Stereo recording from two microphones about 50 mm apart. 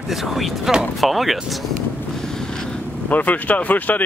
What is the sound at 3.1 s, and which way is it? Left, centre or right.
Speech, left.